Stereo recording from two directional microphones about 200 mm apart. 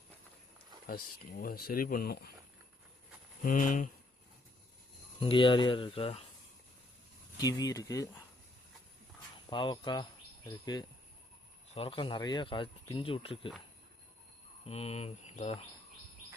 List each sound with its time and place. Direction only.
0.9 s speech: 50° left (ahead or behind)
3.4 s speech: 40° left (ahead or behind)
5.2 s speech: 25° left (ahead or behind)
7.3 s speech: 20° left (ahead or behind)
9.5 s speech: 25° left (ahead or behind)
11.7 s speech: 30° left (ahead or behind)
14.6 s speech: 30° left (ahead or behind)